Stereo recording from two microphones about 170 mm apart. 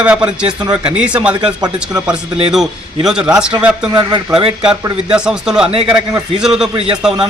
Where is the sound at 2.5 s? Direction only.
5° right (ahead or behind).